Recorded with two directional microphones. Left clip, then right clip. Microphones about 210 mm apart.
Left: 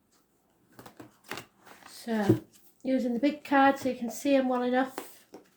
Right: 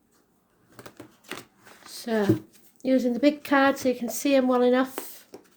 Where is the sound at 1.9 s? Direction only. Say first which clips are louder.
Right 6 dB; 50° right (ahead or behind).